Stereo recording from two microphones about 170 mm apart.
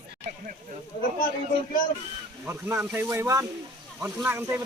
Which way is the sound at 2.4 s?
15° right (ahead or behind).